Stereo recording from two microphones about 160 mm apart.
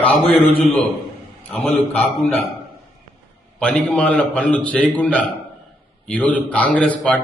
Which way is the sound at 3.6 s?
5° left (ahead or behind).